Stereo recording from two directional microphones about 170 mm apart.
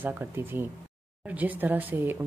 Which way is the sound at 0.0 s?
10° right (ahead or behind).